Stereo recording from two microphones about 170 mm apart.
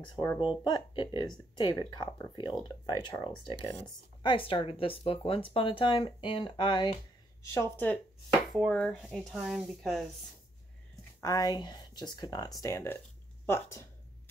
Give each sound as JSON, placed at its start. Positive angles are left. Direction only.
{"t": 0.1, "sound": "speech", "side_deg": 25}
{"t": 7.4, "sound": "speech", "side_deg": 15}
{"t": 11.1, "sound": "speech", "side_deg": 20}